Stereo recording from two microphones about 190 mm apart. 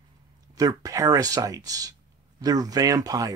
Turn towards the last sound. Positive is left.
turn(degrees=-20)  # may be behind; listen again after turning